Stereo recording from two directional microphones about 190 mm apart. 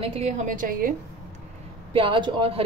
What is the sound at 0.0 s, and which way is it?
Speech, 30° right (ahead or behind).